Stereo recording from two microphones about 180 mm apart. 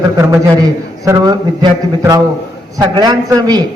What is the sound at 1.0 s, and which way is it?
Speech, 20° right (ahead or behind).